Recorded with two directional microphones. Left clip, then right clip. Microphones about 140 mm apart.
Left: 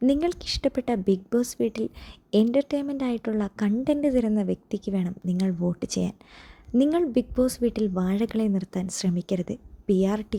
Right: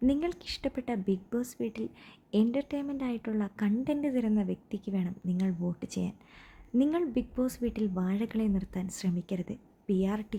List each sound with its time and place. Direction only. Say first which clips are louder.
0.0 s a woman's voice: left 6 dB; 35° left (ahead or behind)